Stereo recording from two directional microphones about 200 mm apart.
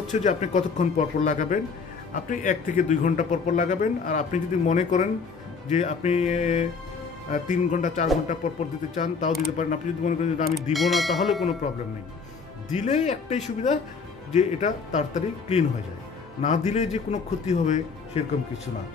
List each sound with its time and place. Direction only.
0.1 s speech: 35° left (ahead or behind)
10.5 s speech: centre (ahead or behind)
12.7 s speech: 35° left (ahead or behind)